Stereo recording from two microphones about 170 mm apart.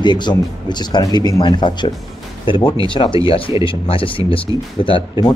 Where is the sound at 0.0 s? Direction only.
25° left (ahead or behind).